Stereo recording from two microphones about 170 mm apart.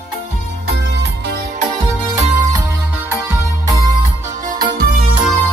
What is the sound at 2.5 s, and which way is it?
Music, 15° right (ahead or behind).